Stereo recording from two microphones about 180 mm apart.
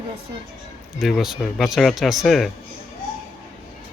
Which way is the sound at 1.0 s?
Centre (ahead or behind).